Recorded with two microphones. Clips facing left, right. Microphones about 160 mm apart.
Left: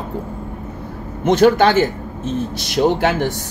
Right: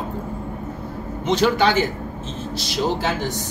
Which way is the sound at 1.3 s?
55° left (ahead or behind).